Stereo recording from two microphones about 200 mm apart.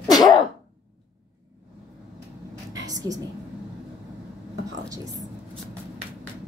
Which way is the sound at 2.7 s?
20° right (ahead or behind).